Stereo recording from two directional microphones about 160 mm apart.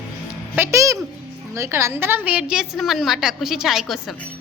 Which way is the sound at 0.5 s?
15° right (ahead or behind).